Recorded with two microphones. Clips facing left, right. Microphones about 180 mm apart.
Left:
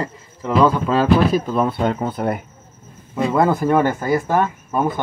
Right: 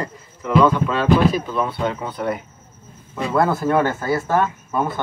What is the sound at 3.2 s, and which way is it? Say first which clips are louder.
Speech: left 2 dB; 15° left (ahead or behind).